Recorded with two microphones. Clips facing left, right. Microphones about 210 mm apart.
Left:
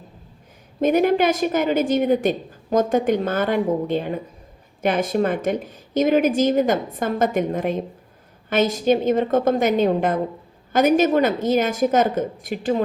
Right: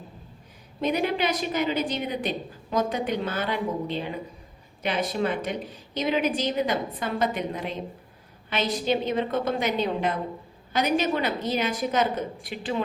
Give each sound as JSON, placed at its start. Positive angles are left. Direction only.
{"t": 0.8, "sound": "a woman's voice", "side_deg": 45}